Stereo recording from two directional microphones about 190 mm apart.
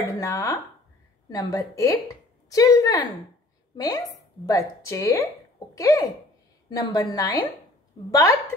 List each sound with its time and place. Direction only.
0.1 s a woman's voice: 15° left (ahead or behind)